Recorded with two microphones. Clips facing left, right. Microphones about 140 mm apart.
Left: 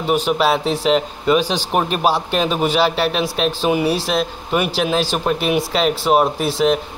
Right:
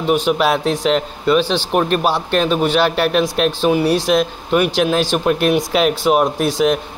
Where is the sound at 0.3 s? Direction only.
Centre (ahead or behind).